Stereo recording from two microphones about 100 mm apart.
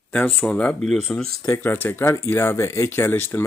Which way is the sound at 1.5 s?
20° left (ahead or behind).